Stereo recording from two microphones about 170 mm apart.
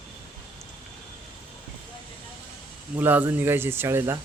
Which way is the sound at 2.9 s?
10° right (ahead or behind).